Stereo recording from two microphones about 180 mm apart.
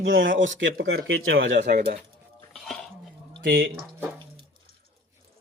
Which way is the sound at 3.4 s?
55° right (ahead or behind).